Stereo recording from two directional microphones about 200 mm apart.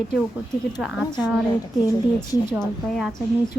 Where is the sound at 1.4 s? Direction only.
20° left (ahead or behind).